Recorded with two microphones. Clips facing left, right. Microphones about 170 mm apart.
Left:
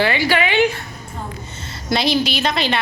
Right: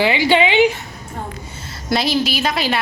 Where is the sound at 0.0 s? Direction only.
15° right (ahead or behind).